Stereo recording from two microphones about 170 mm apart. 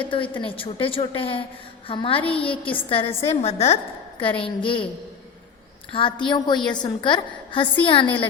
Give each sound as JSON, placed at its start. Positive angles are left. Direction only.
{"t": 0.1, "sound": "a woman's voice", "side_deg": 30}
{"t": 2.4, "sound": "a woman's voice", "side_deg": 10}
{"t": 2.9, "sound": "a woman's voice", "side_deg": 30}
{"t": 5.9, "sound": "a woman's voice", "side_deg": 30}